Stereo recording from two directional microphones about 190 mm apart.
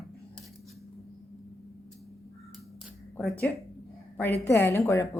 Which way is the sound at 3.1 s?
Centre (ahead or behind).